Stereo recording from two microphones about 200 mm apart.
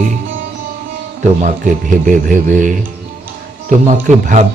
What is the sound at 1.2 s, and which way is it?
A man's voice, 40° right (ahead or behind).